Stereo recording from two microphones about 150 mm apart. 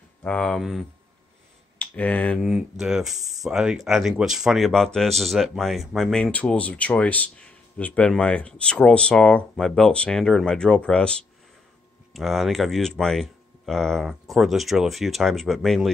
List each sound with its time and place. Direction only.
0.2 s speech: 10° left (ahead or behind)
2.4 s speech: 5° right (ahead or behind)